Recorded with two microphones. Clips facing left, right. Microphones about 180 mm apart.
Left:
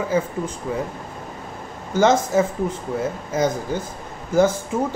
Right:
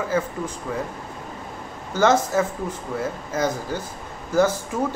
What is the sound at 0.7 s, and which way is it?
Speech, 20° left (ahead or behind).